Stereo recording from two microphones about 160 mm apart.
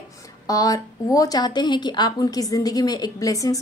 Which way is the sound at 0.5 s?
20° left (ahead or behind).